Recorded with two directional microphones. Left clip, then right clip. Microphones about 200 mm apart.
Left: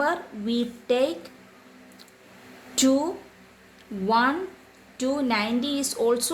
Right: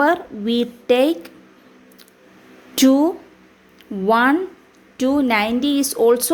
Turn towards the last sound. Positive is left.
turn(degrees=-40)  # may be behind; listen again after turning